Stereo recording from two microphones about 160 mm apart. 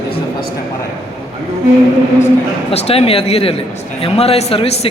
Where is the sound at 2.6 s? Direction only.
35° left (ahead or behind).